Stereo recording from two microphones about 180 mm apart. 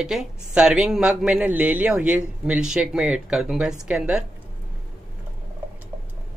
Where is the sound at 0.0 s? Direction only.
5° right (ahead or behind).